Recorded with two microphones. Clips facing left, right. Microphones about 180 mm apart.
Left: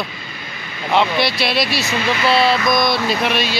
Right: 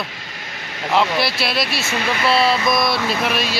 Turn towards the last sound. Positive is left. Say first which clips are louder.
# left 2 dB
turn(degrees=0)  # may be behind; listen again after turning